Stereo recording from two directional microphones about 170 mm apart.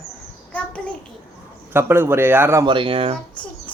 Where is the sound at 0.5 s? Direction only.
5° left (ahead or behind).